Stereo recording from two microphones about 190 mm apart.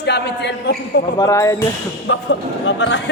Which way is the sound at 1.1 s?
20° left (ahead or behind).